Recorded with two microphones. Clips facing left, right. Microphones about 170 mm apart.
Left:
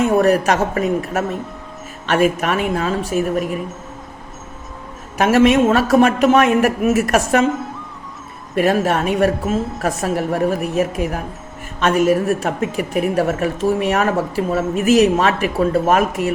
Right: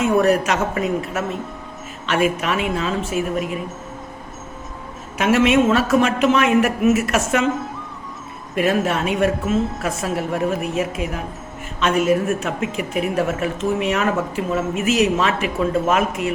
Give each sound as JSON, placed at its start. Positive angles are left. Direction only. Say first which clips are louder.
{"t": 0.1, "sound": "a woman's voice", "louder": "left 2 dB", "side_deg": 40}
{"t": 2.0, "sound": "a woman's voice", "louder": "left 3 dB", "side_deg": 40}
{"t": 5.1, "sound": "a woman's voice", "louder": "left 3 dB", "side_deg": 40}
{"t": 8.5, "sound": "a woman's voice", "louder": "left 3 dB", "side_deg": 40}